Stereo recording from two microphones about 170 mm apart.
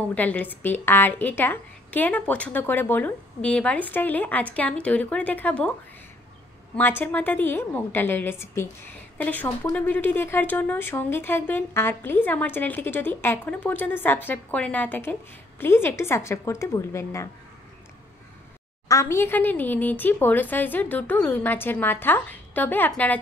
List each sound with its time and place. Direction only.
0.1 s a woman's voice: 10° left (ahead or behind)
6.8 s a woman's voice: 10° left (ahead or behind)
18.9 s a woman's voice: 15° left (ahead or behind)